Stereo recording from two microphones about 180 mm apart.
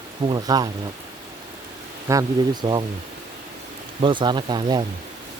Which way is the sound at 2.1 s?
20° right (ahead or behind).